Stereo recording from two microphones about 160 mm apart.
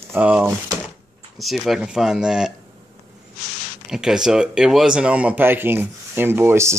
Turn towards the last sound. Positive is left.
turn(degrees=-15)  # may be behind; listen again after turning